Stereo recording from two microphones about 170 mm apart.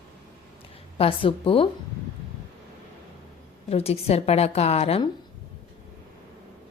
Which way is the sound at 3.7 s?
35° left (ahead or behind).